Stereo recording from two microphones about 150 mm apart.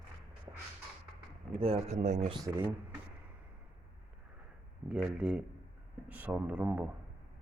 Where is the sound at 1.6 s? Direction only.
45° right (ahead or behind).